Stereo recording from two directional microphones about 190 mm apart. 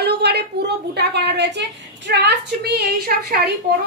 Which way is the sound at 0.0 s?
60° right (ahead or behind).